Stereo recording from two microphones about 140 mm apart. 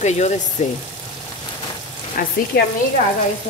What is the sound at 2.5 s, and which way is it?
Frying, 90° left.